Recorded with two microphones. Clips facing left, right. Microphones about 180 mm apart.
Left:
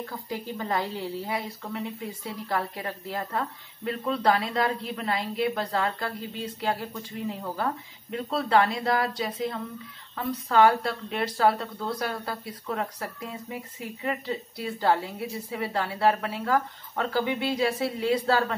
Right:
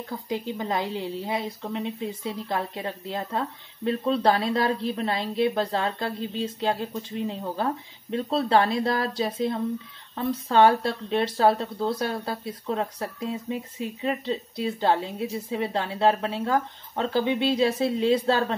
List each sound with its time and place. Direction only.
0.3 s a woman's voice: 20° right (ahead or behind)